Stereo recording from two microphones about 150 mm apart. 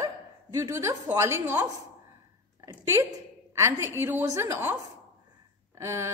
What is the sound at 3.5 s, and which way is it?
A woman's voice, 20° right (ahead or behind).